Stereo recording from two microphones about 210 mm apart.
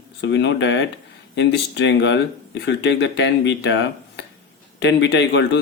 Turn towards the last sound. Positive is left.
turn(degrees=55)  # may be behind; listen again after turning